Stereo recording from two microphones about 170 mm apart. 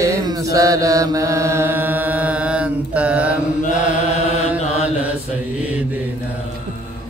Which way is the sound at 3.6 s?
45° left (ahead or behind).